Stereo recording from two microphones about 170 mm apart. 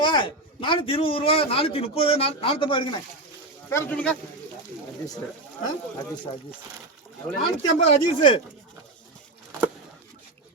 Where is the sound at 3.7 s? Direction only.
15° left (ahead or behind).